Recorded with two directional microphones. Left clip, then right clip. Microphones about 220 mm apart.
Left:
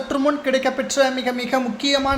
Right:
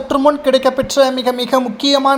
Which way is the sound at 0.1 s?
15° right (ahead or behind).